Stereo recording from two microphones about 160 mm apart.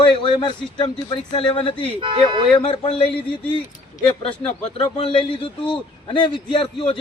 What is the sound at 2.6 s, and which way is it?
A man's voice, 35° left (ahead or behind).